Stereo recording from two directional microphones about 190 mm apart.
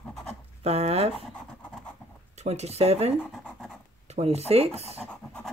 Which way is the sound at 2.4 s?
35° right (ahead or behind).